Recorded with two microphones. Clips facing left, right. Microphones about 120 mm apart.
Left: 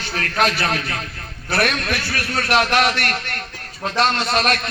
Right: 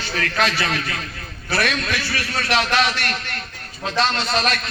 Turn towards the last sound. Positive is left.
turn(degrees=55)  # may be behind; listen again after turning